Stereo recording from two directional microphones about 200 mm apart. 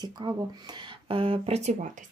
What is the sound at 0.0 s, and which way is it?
Speech, 20° right (ahead or behind).